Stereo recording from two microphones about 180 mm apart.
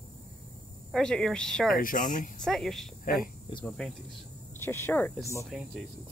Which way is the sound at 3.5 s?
30° left (ahead or behind).